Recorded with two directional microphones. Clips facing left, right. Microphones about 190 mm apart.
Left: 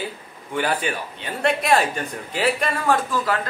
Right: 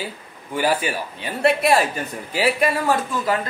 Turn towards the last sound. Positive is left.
turn(degrees=-10)  # may be behind; listen again after turning